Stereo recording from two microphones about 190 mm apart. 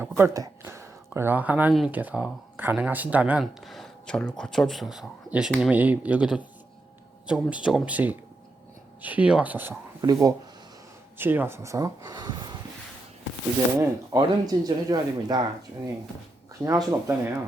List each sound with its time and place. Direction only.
0.0 s speech: 15° right (ahead or behind)
10.0 s speech: 20° right (ahead or behind)
13.7 s speech: 20° right (ahead or behind)
16.6 s speech: 15° right (ahead or behind)